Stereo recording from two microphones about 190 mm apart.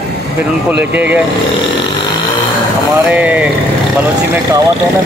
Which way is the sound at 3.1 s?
5° right (ahead or behind).